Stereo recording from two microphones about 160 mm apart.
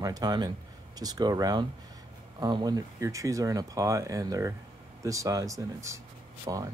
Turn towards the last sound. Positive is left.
turn(degrees=-25)  # may be behind; listen again after turning